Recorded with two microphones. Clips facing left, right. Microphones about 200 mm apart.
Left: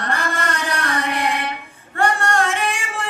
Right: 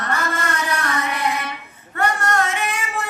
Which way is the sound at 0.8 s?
30° left (ahead or behind).